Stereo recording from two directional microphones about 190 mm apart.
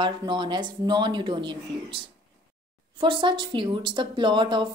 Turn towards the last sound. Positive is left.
turn(degrees=-25)  # may be behind; listen again after turning